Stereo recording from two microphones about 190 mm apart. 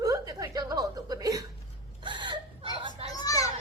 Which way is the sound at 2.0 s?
25° right (ahead or behind).